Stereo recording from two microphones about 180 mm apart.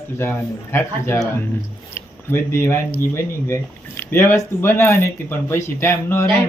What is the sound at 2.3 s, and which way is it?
Speech, 10° left (ahead or behind).